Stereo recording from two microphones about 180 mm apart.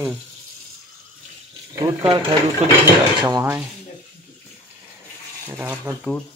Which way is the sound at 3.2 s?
20° right (ahead or behind).